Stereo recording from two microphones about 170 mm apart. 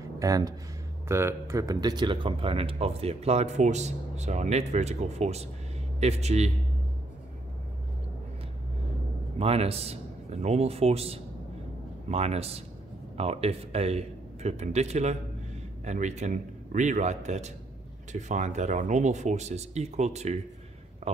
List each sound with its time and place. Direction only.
0.2 s speech: 20° right (ahead or behind); by 6.5 s 40° right (ahead or behind)
9.4 s speech: 35° right (ahead or behind)